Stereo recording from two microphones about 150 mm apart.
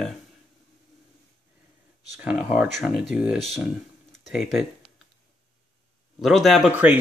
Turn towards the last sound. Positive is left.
turn(degrees=-10)  # may be behind; listen again after turning